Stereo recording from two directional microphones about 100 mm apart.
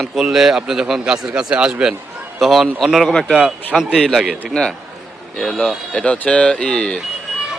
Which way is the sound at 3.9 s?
5° left (ahead or behind).